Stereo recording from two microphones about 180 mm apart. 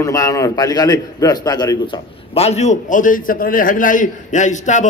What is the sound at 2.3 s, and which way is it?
A man's voice, 35° left (ahead or behind).